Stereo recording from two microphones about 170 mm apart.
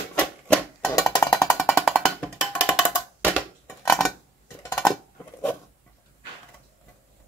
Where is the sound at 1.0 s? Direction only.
20° left (ahead or behind).